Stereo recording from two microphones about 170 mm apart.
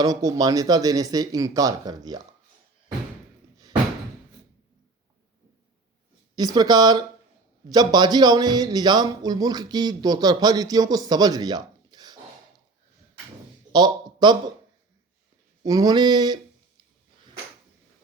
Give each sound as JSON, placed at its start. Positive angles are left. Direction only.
{"t": 0.0, "sound": "speech", "side_deg": -20}
{"t": 6.3, "sound": "speech", "side_deg": -25}
{"t": 13.7, "sound": "speech", "side_deg": -25}
{"t": 15.6, "sound": "speech", "side_deg": -20}